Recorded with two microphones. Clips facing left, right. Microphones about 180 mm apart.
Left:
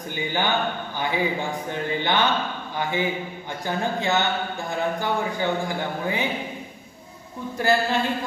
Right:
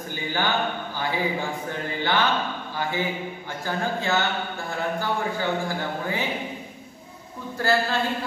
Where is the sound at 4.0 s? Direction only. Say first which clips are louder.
Left 2 dB; 20° left (ahead or behind).